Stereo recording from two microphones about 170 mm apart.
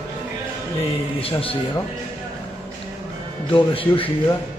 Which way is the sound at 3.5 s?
30° left (ahead or behind).